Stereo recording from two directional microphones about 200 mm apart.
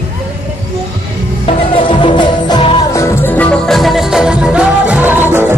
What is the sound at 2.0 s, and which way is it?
Music, 25° left (ahead or behind).